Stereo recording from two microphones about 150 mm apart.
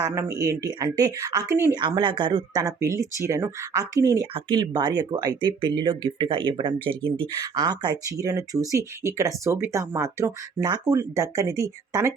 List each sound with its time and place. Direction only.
0.1 s speech: 20° right (ahead or behind)